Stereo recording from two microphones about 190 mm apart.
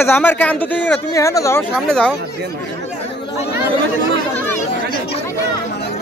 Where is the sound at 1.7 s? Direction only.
5° left (ahead or behind).